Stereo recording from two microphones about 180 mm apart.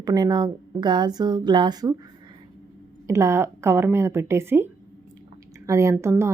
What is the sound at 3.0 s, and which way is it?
A woman's voice, 15° right (ahead or behind).